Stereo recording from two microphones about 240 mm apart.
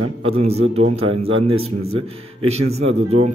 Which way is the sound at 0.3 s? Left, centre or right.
Right.